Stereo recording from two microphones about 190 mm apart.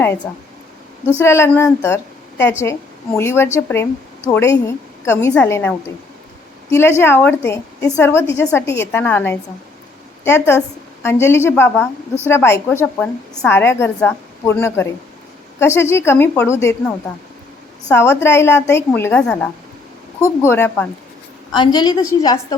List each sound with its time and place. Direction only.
1.0 s a woman's voice: 15° left (ahead or behind)
17.8 s a woman's voice: 10° left (ahead or behind)